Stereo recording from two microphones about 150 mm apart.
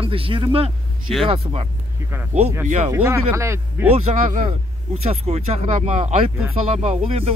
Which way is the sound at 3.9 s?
50° right (ahead or behind).